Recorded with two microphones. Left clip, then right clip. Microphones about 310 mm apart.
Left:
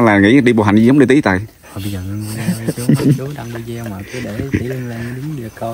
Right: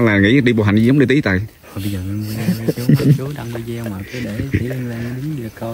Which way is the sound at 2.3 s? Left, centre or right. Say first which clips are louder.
Even; left.